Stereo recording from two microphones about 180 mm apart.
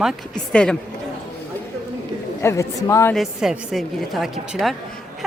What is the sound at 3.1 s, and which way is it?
A woman's voice, centre (ahead or behind).